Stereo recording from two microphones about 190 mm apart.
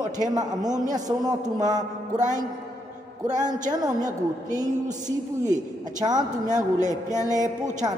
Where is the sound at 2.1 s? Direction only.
40° right (ahead or behind).